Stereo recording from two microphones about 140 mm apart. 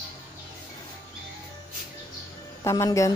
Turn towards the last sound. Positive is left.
turn(degrees=20)  # may be behind; listen again after turning